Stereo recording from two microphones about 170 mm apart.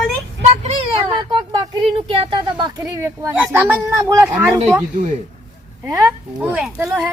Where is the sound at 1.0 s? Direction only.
20° right (ahead or behind).